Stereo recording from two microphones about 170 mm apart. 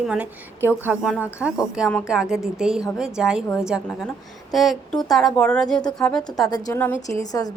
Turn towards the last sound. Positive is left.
turn(degrees=20)  # may be behind; listen again after turning